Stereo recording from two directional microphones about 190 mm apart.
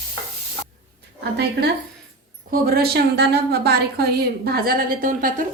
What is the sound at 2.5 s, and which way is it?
A woman's voice, 55° right (ahead or behind).